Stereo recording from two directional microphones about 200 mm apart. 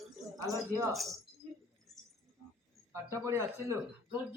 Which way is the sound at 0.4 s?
15° right (ahead or behind).